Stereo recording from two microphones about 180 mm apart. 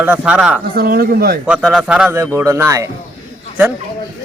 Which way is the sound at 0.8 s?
60° right (ahead or behind).